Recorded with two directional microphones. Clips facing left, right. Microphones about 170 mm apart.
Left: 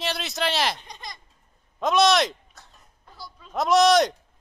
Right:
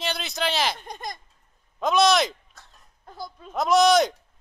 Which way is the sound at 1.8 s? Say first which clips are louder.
Even; centre (ahead or behind).